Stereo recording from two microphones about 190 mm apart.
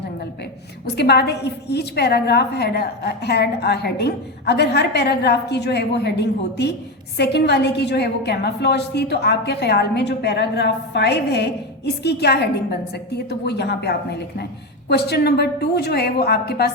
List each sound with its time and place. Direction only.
0.9 s a woman's voice: 60° left (ahead or behind)